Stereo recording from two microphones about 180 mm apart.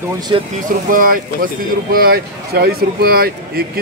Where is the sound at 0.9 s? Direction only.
50° right (ahead or behind).